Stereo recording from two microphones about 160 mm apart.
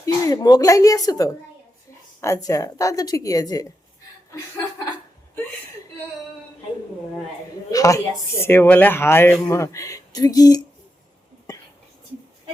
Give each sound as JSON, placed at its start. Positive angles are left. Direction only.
{"t": 0.0, "sound": "speech", "side_deg": 25}
{"t": 7.7, "sound": "speech", "side_deg": 20}